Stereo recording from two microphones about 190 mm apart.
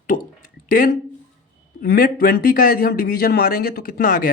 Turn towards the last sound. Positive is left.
turn(degrees=45)  # may be behind; listen again after turning